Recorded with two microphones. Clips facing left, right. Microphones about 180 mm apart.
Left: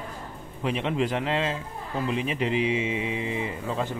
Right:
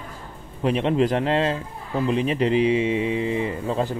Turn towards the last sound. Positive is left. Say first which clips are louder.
# right 5 dB
turn(degrees=-35)  # may be behind; listen again after turning